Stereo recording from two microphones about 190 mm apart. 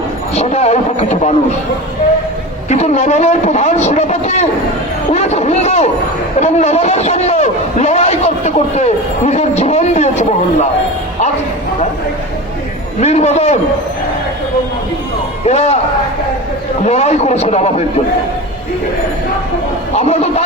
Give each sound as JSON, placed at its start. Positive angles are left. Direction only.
{"t": 0.3, "sound": "a man's voice", "side_deg": 35}
{"t": 2.6, "sound": "a man's voice", "side_deg": 35}
{"t": 13.0, "sound": "a man's voice", "side_deg": 35}
{"t": 15.4, "sound": "a man's voice", "side_deg": 35}
{"t": 16.8, "sound": "a man's voice", "side_deg": 35}
{"t": 20.0, "sound": "a man's voice", "side_deg": 35}